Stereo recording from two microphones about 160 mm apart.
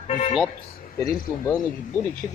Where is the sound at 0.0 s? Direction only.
40° left (ahead or behind).